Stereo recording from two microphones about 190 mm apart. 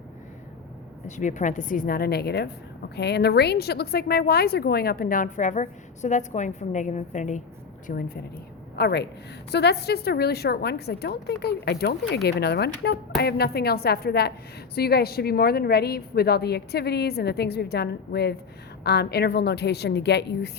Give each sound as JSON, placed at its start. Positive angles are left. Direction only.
{"t": 1.0, "sound": "speech", "side_deg": 40}
{"t": 7.9, "sound": "a woman's voice", "side_deg": 50}